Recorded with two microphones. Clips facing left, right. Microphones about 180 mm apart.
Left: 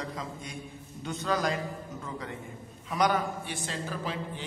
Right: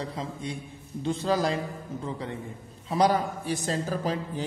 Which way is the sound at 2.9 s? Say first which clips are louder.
Right 4 dB; 30° right (ahead or behind).